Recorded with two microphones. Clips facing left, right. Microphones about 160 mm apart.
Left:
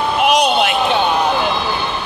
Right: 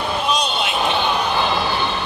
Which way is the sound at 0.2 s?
75° left (ahead or behind).